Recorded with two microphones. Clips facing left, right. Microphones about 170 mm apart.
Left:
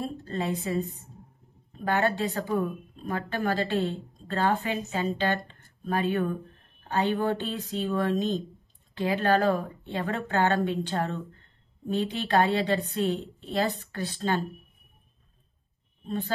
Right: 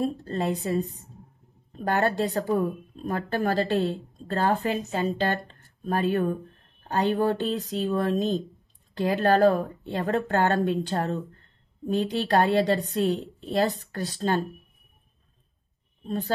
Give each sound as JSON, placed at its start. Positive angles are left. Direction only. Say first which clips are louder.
{"t": 0.0, "sound": "a woman's voice", "louder": "right 4 dB", "side_deg": -40}
{"t": 1.9, "sound": "a woman's voice", "louder": "right 2 dB", "side_deg": -40}